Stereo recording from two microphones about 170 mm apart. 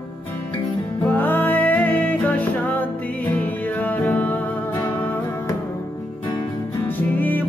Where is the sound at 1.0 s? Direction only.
10° left (ahead or behind).